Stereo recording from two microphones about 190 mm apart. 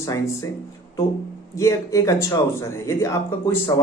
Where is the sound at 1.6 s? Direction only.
15° left (ahead or behind).